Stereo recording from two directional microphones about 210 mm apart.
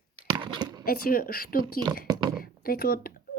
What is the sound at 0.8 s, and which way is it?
Speech, 45° left (ahead or behind).